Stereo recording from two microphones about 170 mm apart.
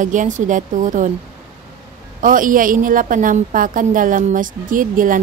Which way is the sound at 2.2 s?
55° right (ahead or behind).